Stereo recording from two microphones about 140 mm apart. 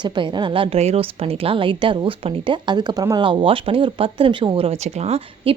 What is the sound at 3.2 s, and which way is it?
Speech, 40° right (ahead or behind).